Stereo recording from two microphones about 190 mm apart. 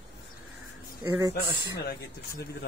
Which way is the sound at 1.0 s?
10° right (ahead or behind).